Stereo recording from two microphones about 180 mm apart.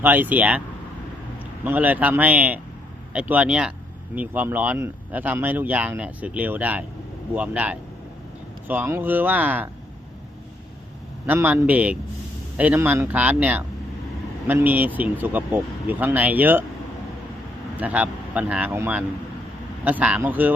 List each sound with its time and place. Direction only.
0.0 s speech: 10° right (ahead or behind)
1.6 s speech: 10° right (ahead or behind)
11.3 s speech: 10° right (ahead or behind)
17.7 s speech: 10° right (ahead or behind)